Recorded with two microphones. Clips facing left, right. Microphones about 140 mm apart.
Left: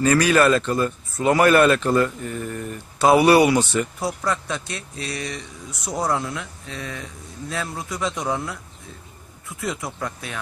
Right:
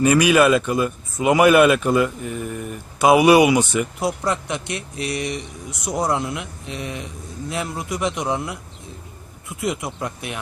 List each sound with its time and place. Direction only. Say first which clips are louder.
0.0 s speech: right 2 dB; 15° right (ahead or behind)
9.6 s speech: right 3 dB; 20° right (ahead or behind)